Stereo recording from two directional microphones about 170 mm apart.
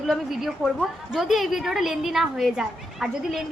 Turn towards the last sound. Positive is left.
turn(degrees=0)  # may be behind; listen again after turning